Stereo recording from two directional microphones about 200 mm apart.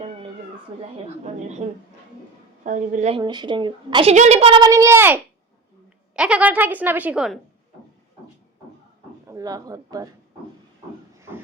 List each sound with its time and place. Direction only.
1.2 s a woman's voice: 35° right (ahead or behind)
2.6 s a woman's voice: 40° right (ahead or behind)
3.2 s a child's voice: 20° right (ahead or behind)
4.1 s a child's voice: 35° right (ahead or behind); by 7.3 s 5° right (ahead or behind)
9.2 s a woman's voice: 15° right (ahead or behind)
11.2 s a sound: 10° right (ahead or behind)